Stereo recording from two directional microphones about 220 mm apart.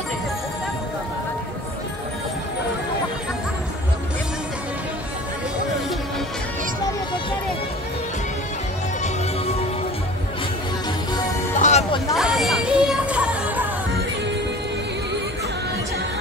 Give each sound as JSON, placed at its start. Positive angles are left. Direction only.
{"t": 11.6, "sound": "hubbub", "side_deg": 30}
{"t": 12.2, "sound": "music", "side_deg": 0}